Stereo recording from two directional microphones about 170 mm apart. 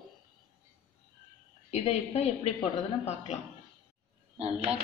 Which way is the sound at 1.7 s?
40° left (ahead or behind).